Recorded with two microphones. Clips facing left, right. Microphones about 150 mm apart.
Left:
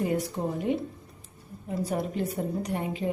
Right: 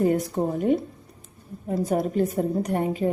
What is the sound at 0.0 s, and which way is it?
A woman's voice, 45° right (ahead or behind).